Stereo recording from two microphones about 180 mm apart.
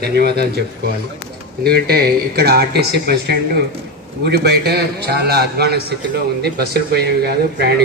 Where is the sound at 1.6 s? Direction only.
60° right (ahead or behind).